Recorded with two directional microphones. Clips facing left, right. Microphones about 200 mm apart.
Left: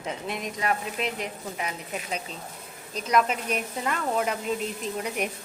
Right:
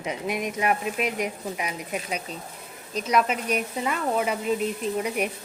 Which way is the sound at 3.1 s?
5° right (ahead or behind).